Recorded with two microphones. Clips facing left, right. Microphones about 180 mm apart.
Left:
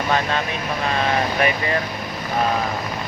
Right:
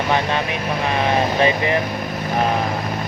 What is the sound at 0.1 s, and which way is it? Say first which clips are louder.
Speech: right 1 dB; 20° right (ahead or behind).